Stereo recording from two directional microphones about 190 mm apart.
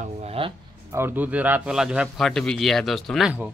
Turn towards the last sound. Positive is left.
turn(degrees=-5)  # may be behind; listen again after turning